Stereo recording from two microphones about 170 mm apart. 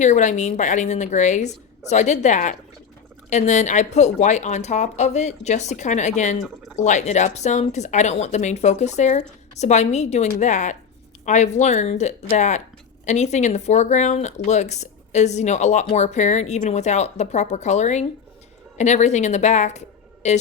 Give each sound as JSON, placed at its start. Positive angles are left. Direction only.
{"t": 0.0, "sound": "speech", "side_deg": 45}